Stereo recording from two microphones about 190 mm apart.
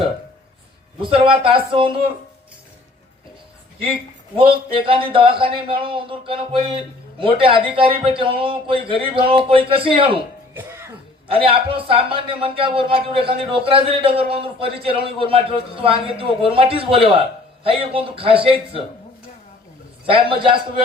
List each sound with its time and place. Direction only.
1.0 s speech: 30° right (ahead or behind)
4.4 s speech: 30° right (ahead or behind)
10.5 s music: 10° right (ahead or behind)
11.3 s speech: 30° right (ahead or behind)
20.1 s speech: 30° right (ahead or behind)